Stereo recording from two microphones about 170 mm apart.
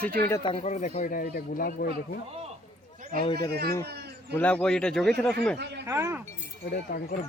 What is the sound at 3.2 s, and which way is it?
Speech, 30° left (ahead or behind).